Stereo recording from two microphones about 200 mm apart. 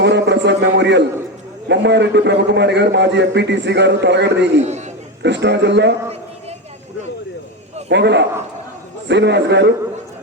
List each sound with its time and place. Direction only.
0.0 s a sound: 60° right (ahead or behind)
1.6 s a man's voice: 60° right (ahead or behind)
7.9 s a man's voice: 60° right (ahead or behind)